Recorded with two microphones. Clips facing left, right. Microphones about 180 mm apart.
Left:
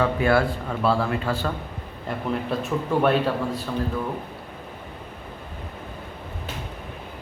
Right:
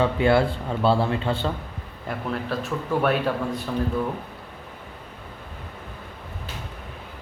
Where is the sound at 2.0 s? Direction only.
Centre (ahead or behind).